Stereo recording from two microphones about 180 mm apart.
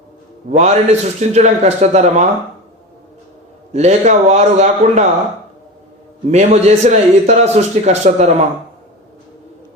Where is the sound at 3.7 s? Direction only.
40° right (ahead or behind).